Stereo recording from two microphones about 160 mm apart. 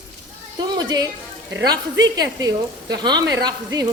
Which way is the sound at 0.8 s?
25° right (ahead or behind).